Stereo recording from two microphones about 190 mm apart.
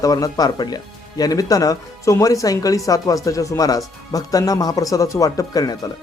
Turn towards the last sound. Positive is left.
turn(degrees=20)  # may be behind; listen again after turning